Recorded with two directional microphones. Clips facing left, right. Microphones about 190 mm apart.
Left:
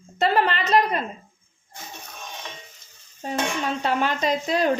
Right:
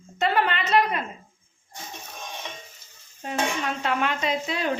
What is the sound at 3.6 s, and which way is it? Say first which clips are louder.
Speech: left 2 dB; 30° left (ahead or behind).